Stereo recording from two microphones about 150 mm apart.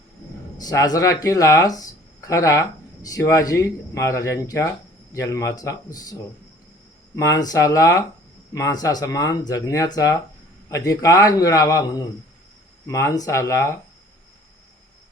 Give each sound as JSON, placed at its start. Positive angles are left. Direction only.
{"t": 0.6, "sound": "speech", "side_deg": 25}
{"t": 7.2, "sound": "speech", "side_deg": 25}